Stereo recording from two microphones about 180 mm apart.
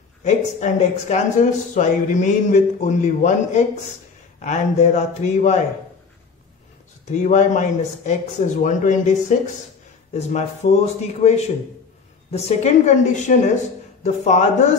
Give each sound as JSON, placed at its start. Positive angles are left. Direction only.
{"t": 0.2, "sound": "speech", "side_deg": 40}
{"t": 7.1, "sound": "speech", "side_deg": 45}
{"t": 10.1, "sound": "speech", "side_deg": 40}